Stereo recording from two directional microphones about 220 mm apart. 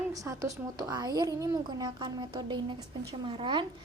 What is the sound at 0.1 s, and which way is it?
A woman's voice, 15° right (ahead or behind).